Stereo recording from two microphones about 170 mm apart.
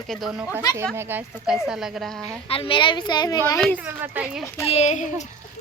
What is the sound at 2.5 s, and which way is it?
A woman's voice, 30° left (ahead or behind).